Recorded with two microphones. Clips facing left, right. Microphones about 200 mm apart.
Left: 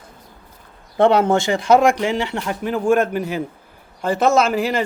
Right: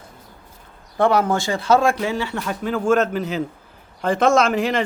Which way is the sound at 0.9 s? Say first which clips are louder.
Left 3 dB; 25° left (ahead or behind).